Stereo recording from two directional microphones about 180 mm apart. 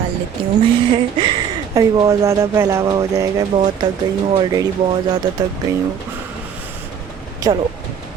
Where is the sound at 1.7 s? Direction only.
15° right (ahead or behind).